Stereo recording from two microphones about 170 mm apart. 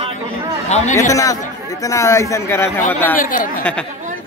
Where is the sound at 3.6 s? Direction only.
5° left (ahead or behind).